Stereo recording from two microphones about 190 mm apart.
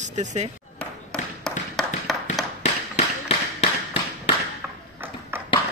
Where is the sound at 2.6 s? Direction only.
35° left (ahead or behind).